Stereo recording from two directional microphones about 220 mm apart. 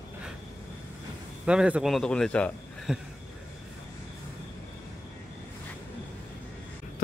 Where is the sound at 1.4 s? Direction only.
5° right (ahead or behind).